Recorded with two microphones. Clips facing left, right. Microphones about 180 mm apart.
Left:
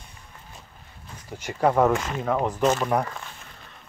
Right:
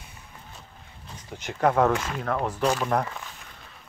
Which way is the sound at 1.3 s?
10° left (ahead or behind).